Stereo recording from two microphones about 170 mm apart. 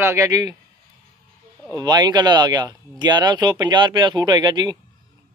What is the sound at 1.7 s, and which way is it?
Speech, 25° right (ahead or behind).